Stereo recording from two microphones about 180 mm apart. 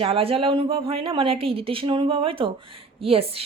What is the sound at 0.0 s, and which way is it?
Speech, 30° right (ahead or behind).